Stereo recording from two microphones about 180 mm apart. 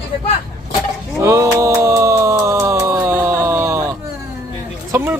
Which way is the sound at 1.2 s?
15° right (ahead or behind).